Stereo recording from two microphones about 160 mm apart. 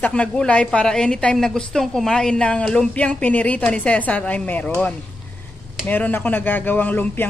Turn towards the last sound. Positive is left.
turn(degrees=10)  # may be behind; listen again after turning